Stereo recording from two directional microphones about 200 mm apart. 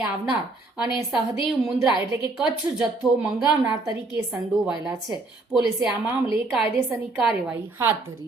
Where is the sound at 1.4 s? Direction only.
25° left (ahead or behind).